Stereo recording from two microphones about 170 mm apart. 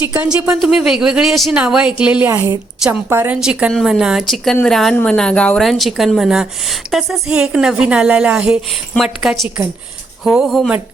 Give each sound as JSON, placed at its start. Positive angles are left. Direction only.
{"t": 0.0, "sound": "speech", "side_deg": -10}
{"t": 2.3, "sound": "a woman's voice", "side_deg": -20}
{"t": 3.1, "sound": "speech", "side_deg": -10}